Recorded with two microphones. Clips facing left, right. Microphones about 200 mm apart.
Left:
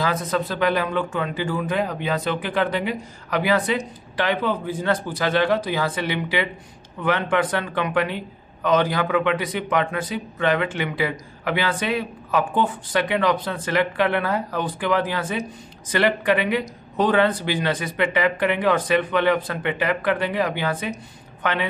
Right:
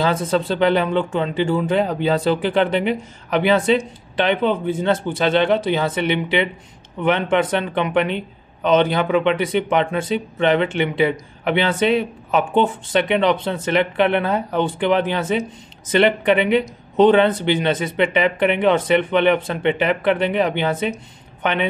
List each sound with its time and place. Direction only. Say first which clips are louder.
0.0 s speech: right 4 dB; 30° right (ahead or behind)